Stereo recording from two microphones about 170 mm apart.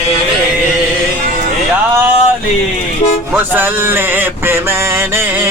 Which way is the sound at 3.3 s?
10° right (ahead or behind).